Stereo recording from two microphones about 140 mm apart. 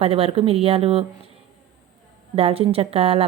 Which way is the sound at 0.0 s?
45° right (ahead or behind).